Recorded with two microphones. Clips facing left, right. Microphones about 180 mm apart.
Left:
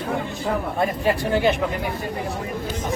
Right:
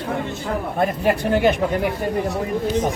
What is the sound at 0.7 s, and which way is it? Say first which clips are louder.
Speech: right 4 dB; 50° right (ahead or behind).